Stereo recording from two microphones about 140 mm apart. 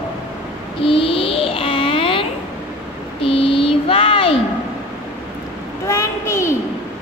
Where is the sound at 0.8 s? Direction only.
40° left (ahead or behind).